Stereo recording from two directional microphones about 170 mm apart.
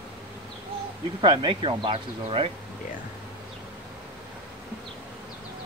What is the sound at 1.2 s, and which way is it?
Speech, 30° right (ahead or behind).